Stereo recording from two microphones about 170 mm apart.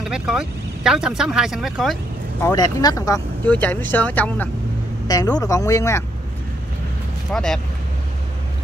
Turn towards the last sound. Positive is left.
turn(degrees=5)  # may be behind; listen again after turning